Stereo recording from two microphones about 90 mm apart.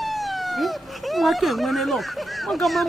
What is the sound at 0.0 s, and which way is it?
Speech, centre (ahead or behind).